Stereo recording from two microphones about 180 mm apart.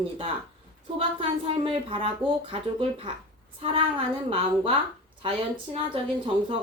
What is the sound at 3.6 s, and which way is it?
Speech, 30° right (ahead or behind).